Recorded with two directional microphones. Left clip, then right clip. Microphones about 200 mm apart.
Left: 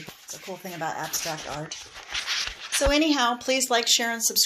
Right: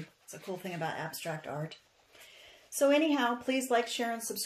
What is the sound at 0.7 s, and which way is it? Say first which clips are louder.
Speech: left 9 dB; 30° left (ahead or behind).